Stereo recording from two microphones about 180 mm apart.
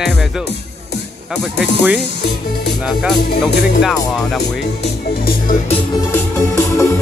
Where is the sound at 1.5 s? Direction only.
75° left (ahead or behind).